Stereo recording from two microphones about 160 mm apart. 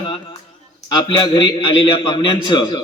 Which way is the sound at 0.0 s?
30° left (ahead or behind).